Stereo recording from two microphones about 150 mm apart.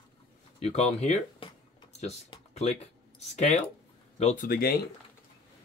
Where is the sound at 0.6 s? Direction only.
45° left (ahead or behind).